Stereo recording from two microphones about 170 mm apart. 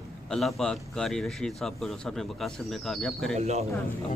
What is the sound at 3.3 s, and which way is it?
Speech, 40° right (ahead or behind).